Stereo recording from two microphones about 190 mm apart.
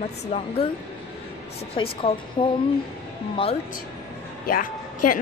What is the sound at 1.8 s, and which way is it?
Speech, 25° left (ahead or behind).